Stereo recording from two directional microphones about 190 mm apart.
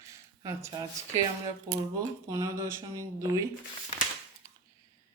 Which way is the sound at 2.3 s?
15° right (ahead or behind).